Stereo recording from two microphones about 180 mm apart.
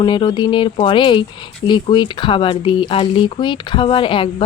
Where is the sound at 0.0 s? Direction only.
25° left (ahead or behind).